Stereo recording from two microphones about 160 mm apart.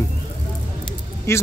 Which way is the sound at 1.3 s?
15° left (ahead or behind).